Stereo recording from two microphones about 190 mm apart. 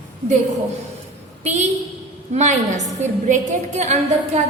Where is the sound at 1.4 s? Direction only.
40° right (ahead or behind).